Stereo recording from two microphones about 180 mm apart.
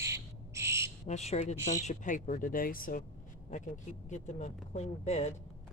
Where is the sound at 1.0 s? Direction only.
35° left (ahead or behind).